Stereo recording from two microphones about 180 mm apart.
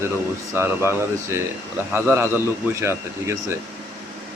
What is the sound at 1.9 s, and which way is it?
Speech, 15° right (ahead or behind).